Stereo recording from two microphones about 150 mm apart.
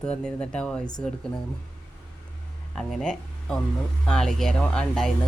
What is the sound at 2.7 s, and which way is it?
Speech, 5° left (ahead or behind).